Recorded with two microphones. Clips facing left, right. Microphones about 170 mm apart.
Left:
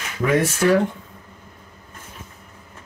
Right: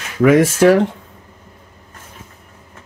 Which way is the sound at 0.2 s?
90° right.